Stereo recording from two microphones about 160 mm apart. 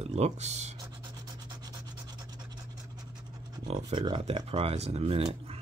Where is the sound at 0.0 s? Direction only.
45° right (ahead or behind).